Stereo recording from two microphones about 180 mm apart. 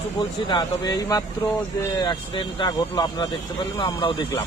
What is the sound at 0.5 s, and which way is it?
Speech, 25° left (ahead or behind).